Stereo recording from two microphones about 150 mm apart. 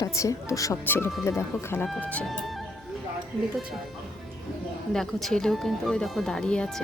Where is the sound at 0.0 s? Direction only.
20° left (ahead or behind); by 2.6 s centre (ahead or behind).